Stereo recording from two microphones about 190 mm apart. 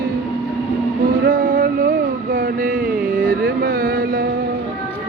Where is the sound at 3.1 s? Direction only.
45° right (ahead or behind).